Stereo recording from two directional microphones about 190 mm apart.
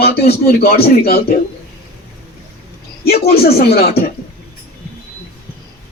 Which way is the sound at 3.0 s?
55° left (ahead or behind).